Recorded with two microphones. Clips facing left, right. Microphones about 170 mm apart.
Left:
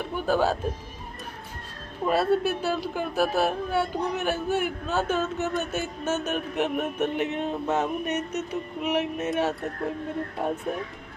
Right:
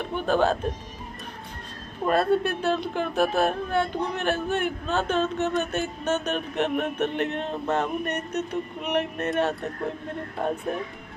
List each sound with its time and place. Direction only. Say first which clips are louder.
0.1 s speech: right 1 dB; 5° left (ahead or behind)
2.0 s speech: right 1 dB; 5° left (ahead or behind)